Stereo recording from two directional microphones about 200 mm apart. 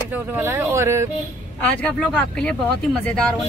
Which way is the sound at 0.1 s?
10° right (ahead or behind).